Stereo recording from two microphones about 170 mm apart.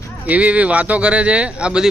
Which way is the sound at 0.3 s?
10° right (ahead or behind).